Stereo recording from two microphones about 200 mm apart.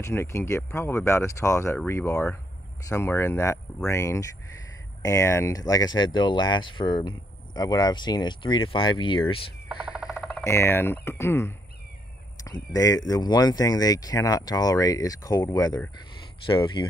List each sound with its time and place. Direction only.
0.0 s speech: 15° left (ahead or behind)
10.1 s speech: 5° left (ahead or behind); by 16.8 s 25° left (ahead or behind)